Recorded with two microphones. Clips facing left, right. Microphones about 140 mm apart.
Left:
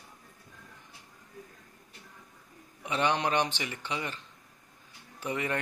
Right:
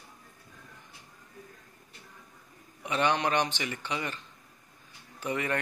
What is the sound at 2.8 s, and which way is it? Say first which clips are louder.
Speech: right 1 dB; 25° left (ahead or behind).